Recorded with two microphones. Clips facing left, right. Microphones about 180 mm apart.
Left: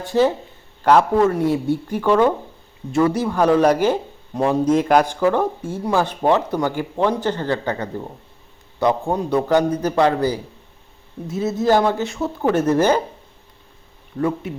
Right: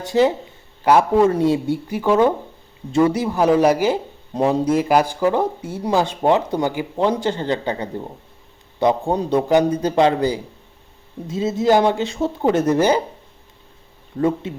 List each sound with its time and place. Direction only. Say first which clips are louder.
0.1 s speech: right 1 dB; 15° right (ahead or behind)
4.4 s speech: even; 20° right (ahead or behind)
4.7 s speech: left 1 dB; 5° right (ahead or behind)
14.2 s speech: right 2 dB; 25° right (ahead or behind)